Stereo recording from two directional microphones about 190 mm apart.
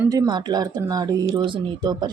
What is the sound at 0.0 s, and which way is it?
Speech, 20° right (ahead or behind).